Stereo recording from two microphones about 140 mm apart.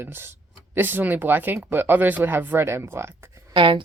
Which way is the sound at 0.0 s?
15° right (ahead or behind).